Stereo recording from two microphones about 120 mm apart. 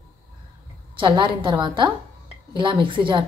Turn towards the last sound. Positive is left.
turn(degrees=-45)  # may be behind; listen again after turning